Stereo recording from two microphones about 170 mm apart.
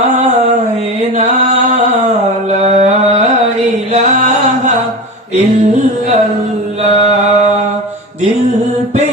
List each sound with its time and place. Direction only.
2.5 s carnatic music: 40° right (ahead or behind)